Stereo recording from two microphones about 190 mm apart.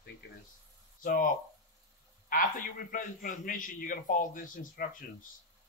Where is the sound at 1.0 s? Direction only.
45° left (ahead or behind).